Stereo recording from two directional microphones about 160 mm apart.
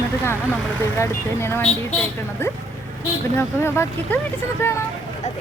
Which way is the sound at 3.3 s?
15° left (ahead or behind).